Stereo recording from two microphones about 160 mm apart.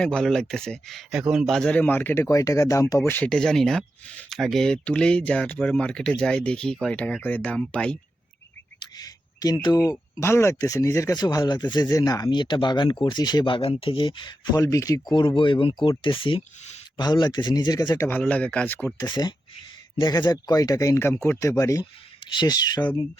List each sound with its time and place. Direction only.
0.0 s speech: 5° left (ahead or behind)
9.0 s speech: 25° left (ahead or behind)
18.9 s speech: 25° left (ahead or behind)